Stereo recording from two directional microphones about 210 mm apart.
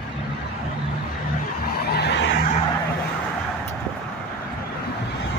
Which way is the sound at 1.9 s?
55° left (ahead or behind).